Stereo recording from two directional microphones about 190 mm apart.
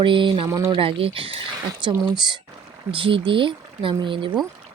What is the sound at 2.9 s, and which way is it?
Speech, 25° right (ahead or behind).